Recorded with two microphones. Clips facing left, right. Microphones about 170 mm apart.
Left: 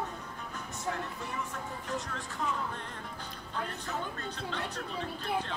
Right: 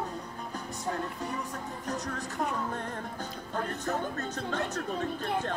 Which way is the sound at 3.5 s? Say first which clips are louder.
Right 5 dB; 45° right (ahead or behind).